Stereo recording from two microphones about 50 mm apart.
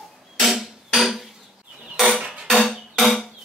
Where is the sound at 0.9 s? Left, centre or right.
Centre.